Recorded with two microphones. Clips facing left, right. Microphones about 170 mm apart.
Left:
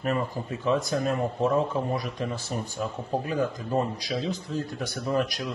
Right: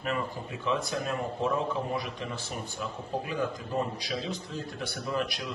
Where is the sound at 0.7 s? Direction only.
40° left (ahead or behind).